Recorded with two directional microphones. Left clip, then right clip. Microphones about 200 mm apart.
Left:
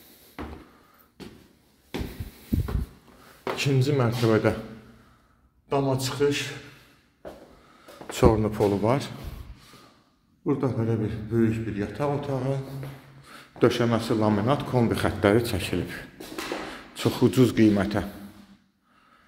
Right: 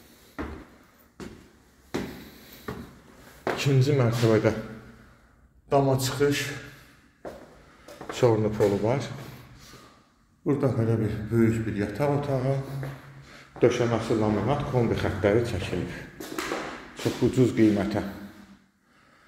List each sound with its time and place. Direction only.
3.5 s speech: 15° left (ahead or behind)
5.7 s a man's voice: 5° left (ahead or behind)
8.1 s speech: 25° left (ahead or behind)
10.4 s a man's voice: centre (ahead or behind)
13.3 s a man's voice: 25° left (ahead or behind)